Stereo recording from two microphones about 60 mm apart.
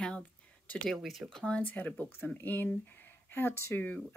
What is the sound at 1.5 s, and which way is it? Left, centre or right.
Speech, left.